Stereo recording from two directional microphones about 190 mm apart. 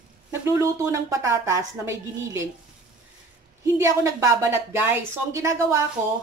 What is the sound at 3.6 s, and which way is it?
A woman's voice, 15° right (ahead or behind).